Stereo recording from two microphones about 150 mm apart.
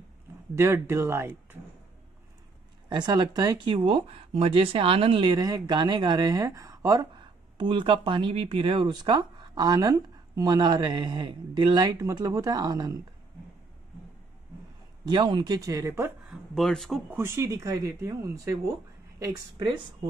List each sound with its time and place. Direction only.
0.6 s speech: 15° right (ahead or behind)
2.9 s speech: 30° right (ahead or behind)
15.0 s speech: 30° right (ahead or behind)
16.3 s speech: centre (ahead or behind)
17.1 s speech: 15° right (ahead or behind)